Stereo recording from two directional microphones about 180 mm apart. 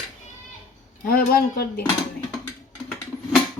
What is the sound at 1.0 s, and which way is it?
Speech, 55° left (ahead or behind).